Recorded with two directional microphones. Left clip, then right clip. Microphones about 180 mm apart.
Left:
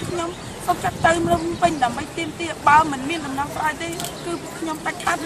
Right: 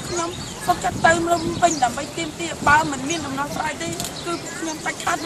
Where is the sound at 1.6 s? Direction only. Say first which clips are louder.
Right 1 dB; 5° right (ahead or behind).